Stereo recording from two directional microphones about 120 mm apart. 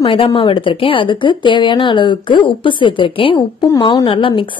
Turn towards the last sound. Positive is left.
turn(degrees=45)  # may be behind; listen again after turning